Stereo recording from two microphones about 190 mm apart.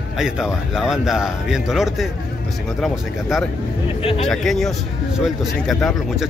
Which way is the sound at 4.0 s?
30° left (ahead or behind).